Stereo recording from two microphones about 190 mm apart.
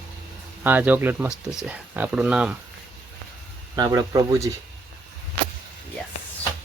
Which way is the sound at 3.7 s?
20° right (ahead or behind).